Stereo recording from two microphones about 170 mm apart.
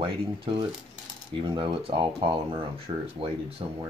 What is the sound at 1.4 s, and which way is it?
Speech, 30° right (ahead or behind).